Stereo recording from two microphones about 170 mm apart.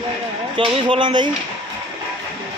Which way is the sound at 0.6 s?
30° right (ahead or behind).